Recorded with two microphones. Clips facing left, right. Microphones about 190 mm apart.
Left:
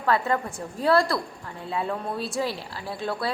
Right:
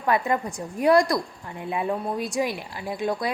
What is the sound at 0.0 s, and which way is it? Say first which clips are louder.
A woman's voice: right 1 dB; 15° right (ahead or behind).